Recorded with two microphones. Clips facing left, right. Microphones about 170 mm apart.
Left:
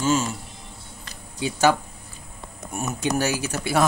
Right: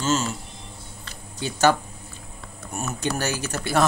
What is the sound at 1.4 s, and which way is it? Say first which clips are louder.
Speech: even; 10° left (ahead or behind).